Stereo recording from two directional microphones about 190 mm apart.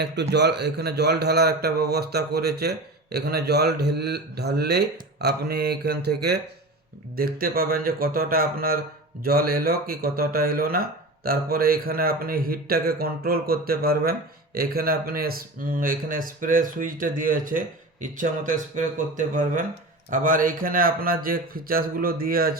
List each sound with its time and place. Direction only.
0.0 s a man's voice: 60° right (ahead or behind)
7.2 s speech: 50° right (ahead or behind)